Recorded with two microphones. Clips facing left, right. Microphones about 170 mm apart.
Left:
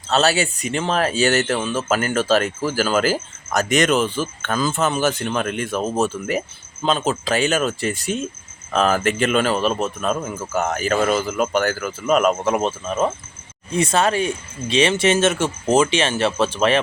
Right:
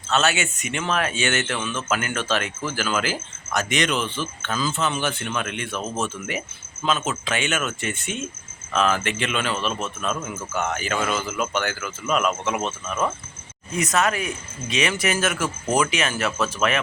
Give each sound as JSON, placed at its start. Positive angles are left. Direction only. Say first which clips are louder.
{"t": 0.1, "sound": "speech", "louder": "left 4 dB", "side_deg": 35}